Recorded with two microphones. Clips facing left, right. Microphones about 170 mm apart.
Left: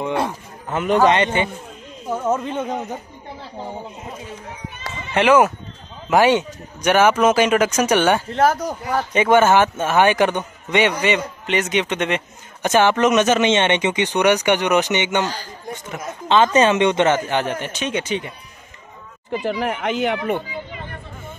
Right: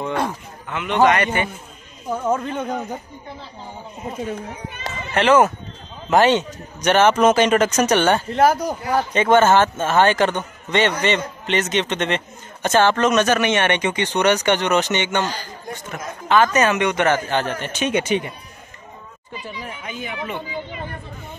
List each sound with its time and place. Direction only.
0.0 s a man's voice: 10° left (ahead or behind)
0.7 s a man's voice: 40° left (ahead or behind)
1.0 s speech: 25° left (ahead or behind)
2.0 s speech: 5° left (ahead or behind)
5.1 s a man's voice: 10° left (ahead or behind)
8.3 s speech: centre (ahead or behind)
9.1 s a man's voice: 10° left (ahead or behind)
18.1 s speech: 55° right (ahead or behind)
19.3 s speech: 85° left